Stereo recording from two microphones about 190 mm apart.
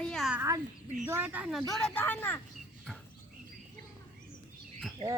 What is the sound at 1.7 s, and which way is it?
Speech, 5° left (ahead or behind).